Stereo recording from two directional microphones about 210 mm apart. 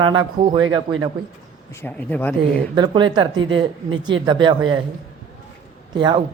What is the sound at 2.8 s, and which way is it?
A man's voice, 20° right (ahead or behind).